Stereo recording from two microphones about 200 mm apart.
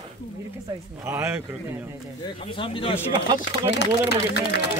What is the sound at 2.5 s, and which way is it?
Speech, 25° left (ahead or behind).